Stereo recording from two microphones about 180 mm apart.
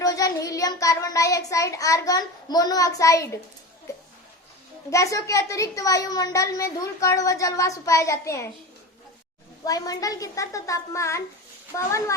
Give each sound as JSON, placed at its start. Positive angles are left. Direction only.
{"t": 0.0, "sound": "a child's voice", "side_deg": 20}
{"t": 4.9, "sound": "a child's voice", "side_deg": 15}
{"t": 9.6, "sound": "a child's voice", "side_deg": 20}